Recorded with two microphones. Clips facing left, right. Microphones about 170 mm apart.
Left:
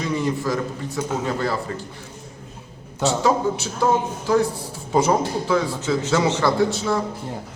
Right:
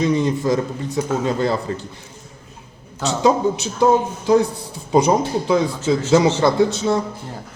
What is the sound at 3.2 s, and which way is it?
A man's voice, 20° right (ahead or behind).